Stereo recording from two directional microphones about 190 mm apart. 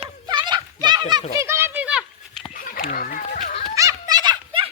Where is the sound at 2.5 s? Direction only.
50° left (ahead or behind).